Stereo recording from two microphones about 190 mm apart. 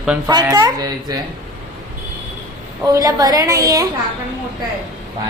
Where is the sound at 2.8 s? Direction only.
20° right (ahead or behind).